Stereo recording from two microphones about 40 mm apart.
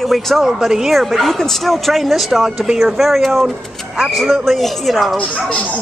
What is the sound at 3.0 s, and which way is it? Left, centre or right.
Speech, centre.